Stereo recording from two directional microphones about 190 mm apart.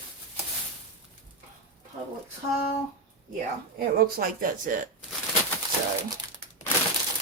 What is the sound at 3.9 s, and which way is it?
Speech, 50° right (ahead or behind).